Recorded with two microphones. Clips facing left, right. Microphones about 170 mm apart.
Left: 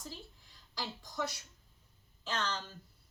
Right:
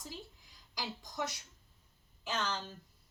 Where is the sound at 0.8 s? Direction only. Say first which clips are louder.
Left 1 dB; 15° right (ahead or behind).